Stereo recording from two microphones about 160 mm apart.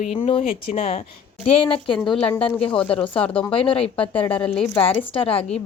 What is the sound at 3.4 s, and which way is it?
Speech, 35° left (ahead or behind).